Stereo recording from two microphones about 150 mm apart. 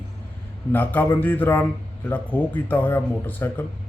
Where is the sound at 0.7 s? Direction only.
10° left (ahead or behind).